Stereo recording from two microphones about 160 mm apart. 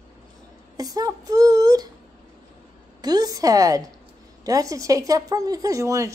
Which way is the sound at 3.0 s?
25° right (ahead or behind).